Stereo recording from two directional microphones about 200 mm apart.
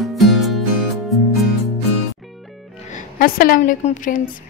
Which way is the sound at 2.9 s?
45° left (ahead or behind).